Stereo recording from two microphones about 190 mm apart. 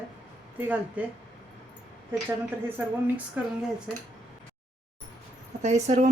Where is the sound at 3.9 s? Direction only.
5° left (ahead or behind).